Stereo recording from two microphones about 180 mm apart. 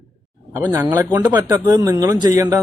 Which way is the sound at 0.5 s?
15° right (ahead or behind).